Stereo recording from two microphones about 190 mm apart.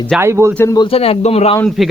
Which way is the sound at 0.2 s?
15° right (ahead or behind).